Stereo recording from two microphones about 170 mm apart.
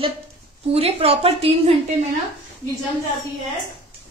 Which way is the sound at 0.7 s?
35° right (ahead or behind).